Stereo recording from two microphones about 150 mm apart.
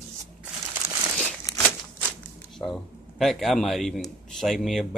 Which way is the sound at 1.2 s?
20° left (ahead or behind).